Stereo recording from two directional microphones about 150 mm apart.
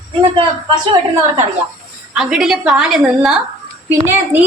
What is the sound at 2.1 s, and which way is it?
A woman's voice, 5° right (ahead or behind).